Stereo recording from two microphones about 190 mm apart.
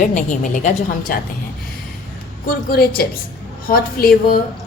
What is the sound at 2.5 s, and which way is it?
A woman's voice, 55° left (ahead or behind).